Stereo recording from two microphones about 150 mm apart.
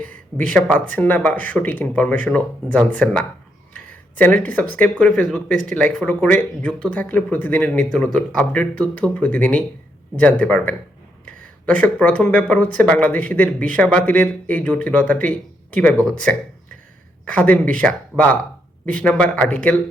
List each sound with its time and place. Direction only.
0.0 s speech: 10° left (ahead or behind)
18.1 s speech: 15° right (ahead or behind)
18.9 s speech: 10° left (ahead or behind)